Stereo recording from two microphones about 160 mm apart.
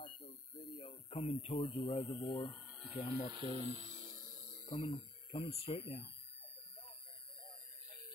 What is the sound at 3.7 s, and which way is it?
Speech, 50° right (ahead or behind).